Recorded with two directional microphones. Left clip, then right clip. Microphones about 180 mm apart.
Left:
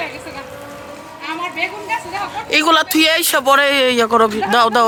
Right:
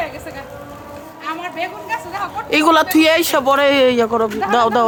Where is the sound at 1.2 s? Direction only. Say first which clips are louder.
Left 2 dB; 10° right (ahead or behind).